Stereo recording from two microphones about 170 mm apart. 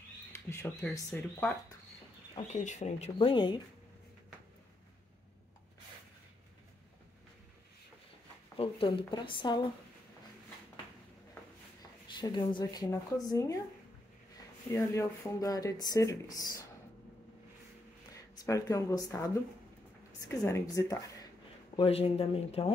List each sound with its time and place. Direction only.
0.3 s speech: 15° left (ahead or behind)
2.3 s speech: 45° left (ahead or behind)
3.2 s speech: 25° left (ahead or behind)
8.5 s speech: 30° left (ahead or behind)
12.2 s speech: 25° left (ahead or behind)
14.7 s speech: 20° left (ahead or behind)
18.1 s a woman's voice: 20° left (ahead or behind)
21.7 s speech: 35° left (ahead or behind)